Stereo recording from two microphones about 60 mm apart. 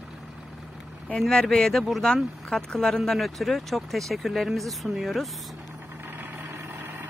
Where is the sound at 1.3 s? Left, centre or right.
Centre.